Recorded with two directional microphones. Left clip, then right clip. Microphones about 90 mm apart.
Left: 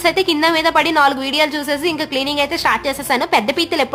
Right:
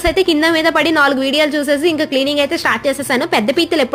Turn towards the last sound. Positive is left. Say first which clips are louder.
# right 2 dB
turn(degrees=-25)  # may be behind; listen again after turning